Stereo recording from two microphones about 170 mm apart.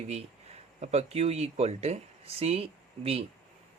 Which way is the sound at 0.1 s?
40° right (ahead or behind).